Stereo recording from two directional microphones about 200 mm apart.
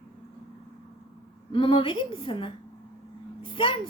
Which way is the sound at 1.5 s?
25° left (ahead or behind).